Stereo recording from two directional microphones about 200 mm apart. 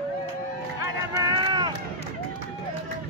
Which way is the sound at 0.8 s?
20° right (ahead or behind).